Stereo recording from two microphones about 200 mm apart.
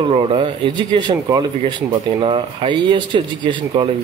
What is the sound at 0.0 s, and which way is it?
Speech, 30° right (ahead or behind).